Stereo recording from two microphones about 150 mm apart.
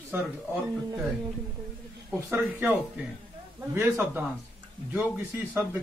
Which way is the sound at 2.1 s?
15° right (ahead or behind).